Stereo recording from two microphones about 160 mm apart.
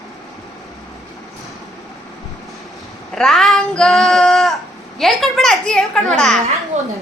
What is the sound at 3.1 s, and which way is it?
Child singing, centre (ahead or behind).